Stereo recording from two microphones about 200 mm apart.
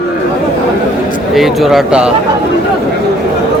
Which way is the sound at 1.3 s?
Centre (ahead or behind).